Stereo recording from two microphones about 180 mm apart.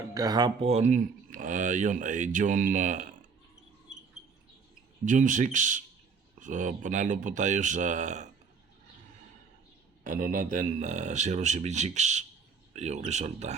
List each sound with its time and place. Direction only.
0.0 s speech: 20° right (ahead or behind); by 3.1 s 45° right (ahead or behind)
5.0 s speech: 45° right (ahead or behind)
10.0 s speech: 50° right (ahead or behind)